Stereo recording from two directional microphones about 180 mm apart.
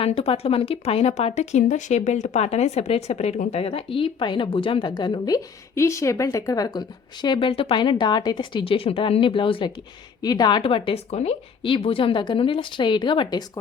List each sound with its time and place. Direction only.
0.0 s speech: 35° left (ahead or behind)